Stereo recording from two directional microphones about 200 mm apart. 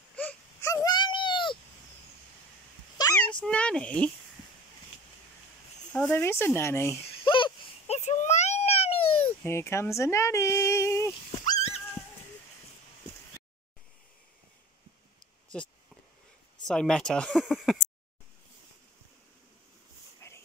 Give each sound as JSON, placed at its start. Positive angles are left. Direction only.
{"t": 0.1, "sound": "wail", "side_deg": 5}
{"t": 3.0, "sound": "a sound", "side_deg": 20}
{"t": 3.3, "sound": "a sound", "side_deg": 5}
{"t": 5.9, "sound": "speech", "side_deg": 10}
{"t": 7.1, "sound": "a sound", "side_deg": 25}
{"t": 9.2, "sound": "speech", "side_deg": 10}
{"t": 11.3, "sound": "dog", "side_deg": 20}
{"t": 15.5, "sound": "speech", "side_deg": 5}
{"t": 20.2, "sound": "dog", "side_deg": 15}